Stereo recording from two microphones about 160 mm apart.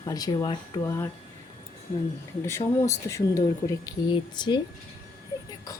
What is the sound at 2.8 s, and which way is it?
Speech, 20° left (ahead or behind).